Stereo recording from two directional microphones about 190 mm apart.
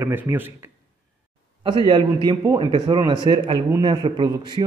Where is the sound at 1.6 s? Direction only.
25° right (ahead or behind).